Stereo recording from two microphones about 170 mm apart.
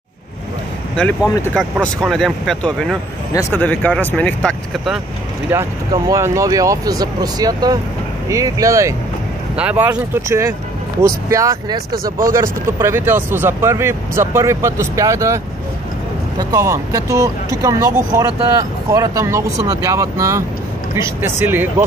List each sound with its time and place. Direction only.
1.2 s speech: 20° left (ahead or behind)
1.5 s speech: centre (ahead or behind)
3.3 s speech: 15° left (ahead or behind)
5.5 s speech: 20° right (ahead or behind)
9.6 s speech: 10° right (ahead or behind)